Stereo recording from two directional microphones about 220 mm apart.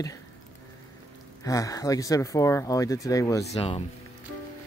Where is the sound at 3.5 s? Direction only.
25° left (ahead or behind).